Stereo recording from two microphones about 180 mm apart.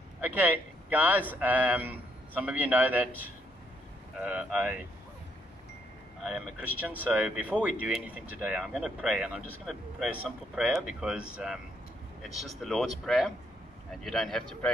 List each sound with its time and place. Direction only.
0.2 s speech: 10° right (ahead or behind)
6.2 s speech: 5° right (ahead or behind)